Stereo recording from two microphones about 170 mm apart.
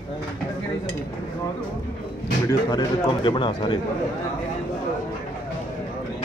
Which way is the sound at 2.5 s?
25° left (ahead or behind).